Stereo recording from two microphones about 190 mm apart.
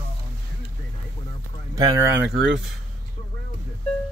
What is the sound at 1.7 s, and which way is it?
Speech, 20° right (ahead or behind).